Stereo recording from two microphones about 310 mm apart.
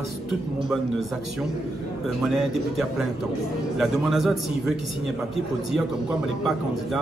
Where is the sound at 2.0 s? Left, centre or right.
Centre.